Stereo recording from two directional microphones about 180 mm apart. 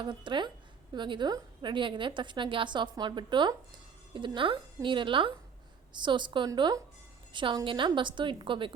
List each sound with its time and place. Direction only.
0.0 s a woman's voice: 25° right (ahead or behind)